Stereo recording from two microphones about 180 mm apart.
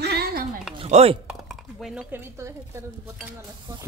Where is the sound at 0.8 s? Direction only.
35° right (ahead or behind).